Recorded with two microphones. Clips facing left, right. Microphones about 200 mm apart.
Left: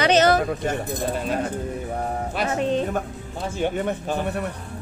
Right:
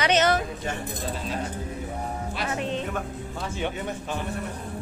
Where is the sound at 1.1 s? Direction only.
55° left (ahead or behind).